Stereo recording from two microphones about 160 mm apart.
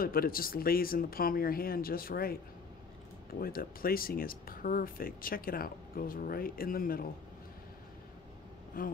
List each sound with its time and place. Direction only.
0.0 s speech: 65° left (ahead or behind)
3.3 s speech: 65° left (ahead or behind)
8.8 s speech: 60° left (ahead or behind)